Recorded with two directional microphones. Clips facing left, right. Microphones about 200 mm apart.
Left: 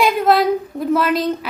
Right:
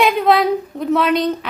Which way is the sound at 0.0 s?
Centre (ahead or behind).